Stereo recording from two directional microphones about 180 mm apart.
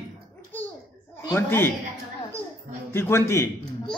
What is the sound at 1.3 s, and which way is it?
Speech, 15° left (ahead or behind).